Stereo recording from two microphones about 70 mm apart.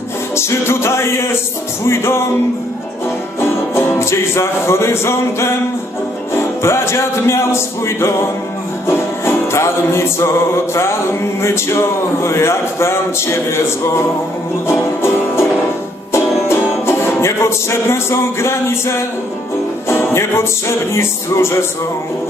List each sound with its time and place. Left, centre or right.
0.4 s music: left
3.3 s music: left